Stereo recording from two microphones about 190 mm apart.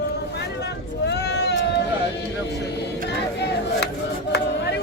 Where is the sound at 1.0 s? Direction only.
60° left (ahead or behind).